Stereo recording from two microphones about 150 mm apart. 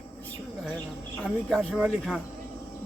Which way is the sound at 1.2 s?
Centre (ahead or behind).